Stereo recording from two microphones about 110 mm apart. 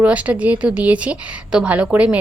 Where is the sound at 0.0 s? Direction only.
10° right (ahead or behind).